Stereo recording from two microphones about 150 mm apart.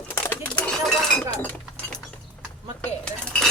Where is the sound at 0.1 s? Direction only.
15° left (ahead or behind).